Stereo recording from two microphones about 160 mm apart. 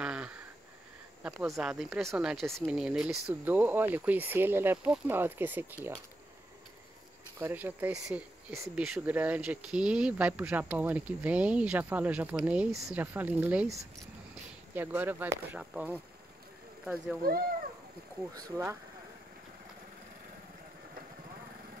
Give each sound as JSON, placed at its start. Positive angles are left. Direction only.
{"t": 0.0, "sound": "a sound", "side_deg": -5}
{"t": 1.2, "sound": "speech", "side_deg": 0}
{"t": 2.4, "sound": "speech", "side_deg": -15}
{"t": 2.7, "sound": "speech", "side_deg": -5}
{"t": 7.3, "sound": "speech", "side_deg": -15}